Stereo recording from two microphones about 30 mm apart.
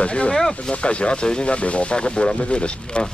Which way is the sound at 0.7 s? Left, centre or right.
Left.